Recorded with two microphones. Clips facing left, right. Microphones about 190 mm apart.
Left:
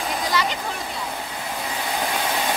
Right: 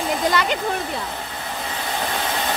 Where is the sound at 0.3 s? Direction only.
55° right (ahead or behind).